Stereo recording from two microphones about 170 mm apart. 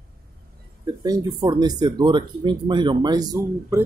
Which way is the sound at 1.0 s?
25° right (ahead or behind).